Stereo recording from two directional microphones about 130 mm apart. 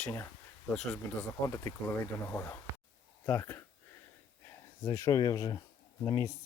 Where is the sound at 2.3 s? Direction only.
15° left (ahead or behind).